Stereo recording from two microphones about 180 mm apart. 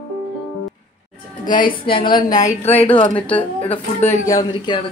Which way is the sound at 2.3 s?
40° left (ahead or behind).